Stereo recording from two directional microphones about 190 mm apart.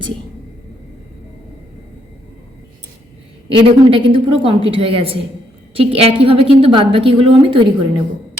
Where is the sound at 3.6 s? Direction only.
30° right (ahead or behind).